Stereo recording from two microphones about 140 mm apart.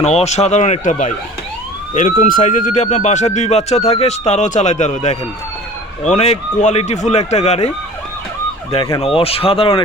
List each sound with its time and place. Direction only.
0.0 s speech: 50° left (ahead or behind)
9.0 s speech: 40° left (ahead or behind)